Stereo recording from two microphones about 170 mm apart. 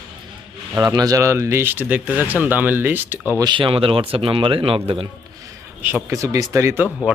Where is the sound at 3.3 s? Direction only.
25° right (ahead or behind).